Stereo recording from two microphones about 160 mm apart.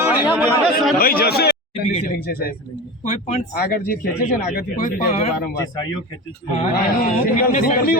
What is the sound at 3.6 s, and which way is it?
Speech, 65° left (ahead or behind).